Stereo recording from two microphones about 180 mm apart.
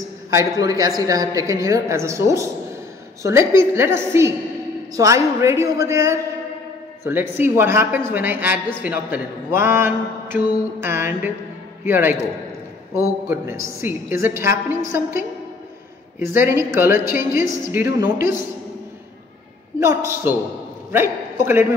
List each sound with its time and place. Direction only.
0.3 s a woman's voice: 20° right (ahead or behind)
13.3 s a man's voice: 15° right (ahead or behind)
19.8 s a man's voice: 15° right (ahead or behind)